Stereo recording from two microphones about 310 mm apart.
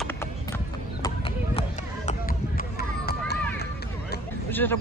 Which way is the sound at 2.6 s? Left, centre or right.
Left.